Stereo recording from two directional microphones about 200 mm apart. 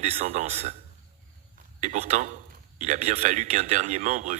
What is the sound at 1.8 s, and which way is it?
A man's voice, 35° right (ahead or behind).